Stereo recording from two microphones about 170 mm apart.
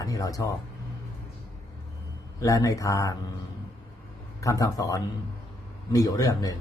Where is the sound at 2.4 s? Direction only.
20° left (ahead or behind).